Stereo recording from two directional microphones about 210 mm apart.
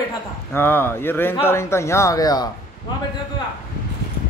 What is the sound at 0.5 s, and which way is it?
A man's voice, 10° left (ahead or behind).